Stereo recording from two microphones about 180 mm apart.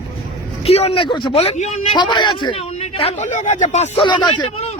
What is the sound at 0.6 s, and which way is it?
Speech, 35° left (ahead or behind).